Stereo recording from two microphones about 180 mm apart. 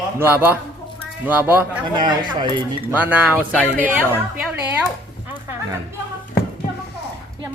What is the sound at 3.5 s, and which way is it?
Speech, 10° left (ahead or behind).